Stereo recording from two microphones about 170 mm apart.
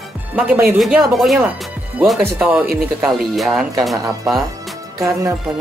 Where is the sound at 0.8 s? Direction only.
Centre (ahead or behind).